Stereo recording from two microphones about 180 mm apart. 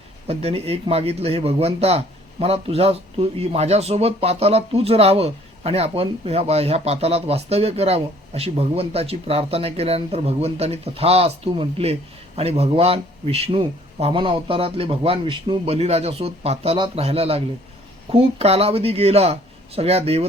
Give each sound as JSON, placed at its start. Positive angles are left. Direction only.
{"t": 0.3, "sound": "speech", "side_deg": -35}